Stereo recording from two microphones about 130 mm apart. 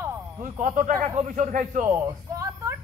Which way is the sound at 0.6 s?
85° right.